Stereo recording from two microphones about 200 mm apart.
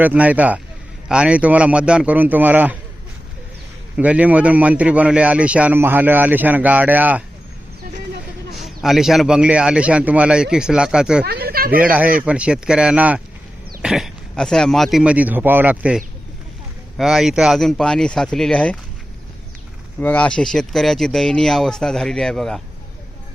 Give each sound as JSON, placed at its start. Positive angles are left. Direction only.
{"t": 0.0, "sound": "a man's voice", "side_deg": -5}
{"t": 3.9, "sound": "a man's voice", "side_deg": -5}
{"t": 8.5, "sound": "a man's voice", "side_deg": 0}
{"t": 11.3, "sound": "speech", "side_deg": -50}
{"t": 11.7, "sound": "a man's voice", "side_deg": -5}
{"t": 17.0, "sound": "a man's voice", "side_deg": 0}
{"t": 20.0, "sound": "a man's voice", "side_deg": 10}